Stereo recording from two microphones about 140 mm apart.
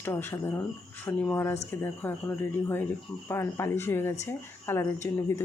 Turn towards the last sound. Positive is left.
turn(degrees=20)  # may be behind; listen again after turning